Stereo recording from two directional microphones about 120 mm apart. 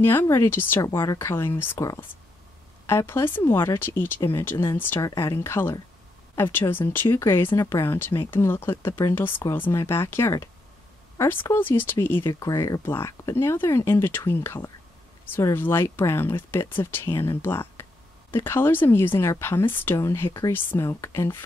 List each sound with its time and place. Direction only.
0.0 s speech: 20° left (ahead or behind)